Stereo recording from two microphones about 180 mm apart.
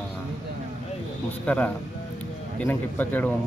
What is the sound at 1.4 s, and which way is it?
Speech, 5° left (ahead or behind).